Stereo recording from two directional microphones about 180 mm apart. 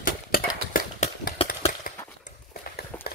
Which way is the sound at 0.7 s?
50° left (ahead or behind).